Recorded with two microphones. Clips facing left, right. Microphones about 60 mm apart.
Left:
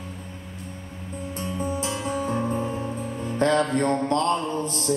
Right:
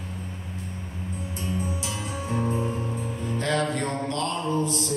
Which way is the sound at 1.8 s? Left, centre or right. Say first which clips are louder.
Left 5 dB; left.